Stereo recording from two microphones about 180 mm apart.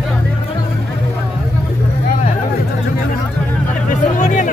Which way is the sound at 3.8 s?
45° left (ahead or behind).